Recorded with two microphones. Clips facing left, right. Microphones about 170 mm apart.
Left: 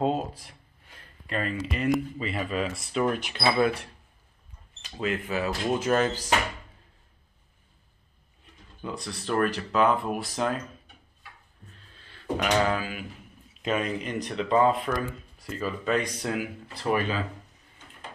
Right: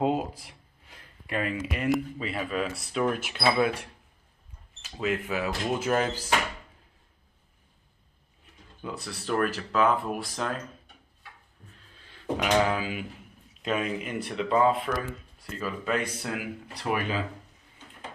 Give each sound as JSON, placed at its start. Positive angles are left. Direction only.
{"t": 0.0, "sound": "a sound", "side_deg": -15}
{"t": 1.7, "sound": "speech", "side_deg": -5}
{"t": 8.8, "sound": "speech", "side_deg": -5}
{"t": 12.1, "sound": "speech", "side_deg": -10}
{"t": 13.6, "sound": "speech", "side_deg": 0}